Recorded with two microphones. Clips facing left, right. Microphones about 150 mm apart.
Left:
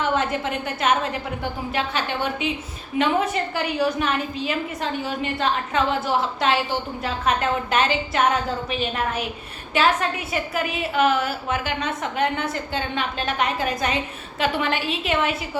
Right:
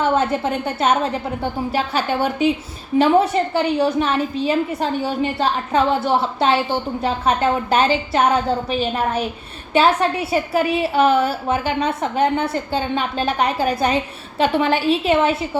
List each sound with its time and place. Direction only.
0.0 s a woman's voice: 30° right (ahead or behind)